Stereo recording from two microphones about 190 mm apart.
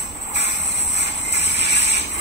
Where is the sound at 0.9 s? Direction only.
65° left (ahead or behind).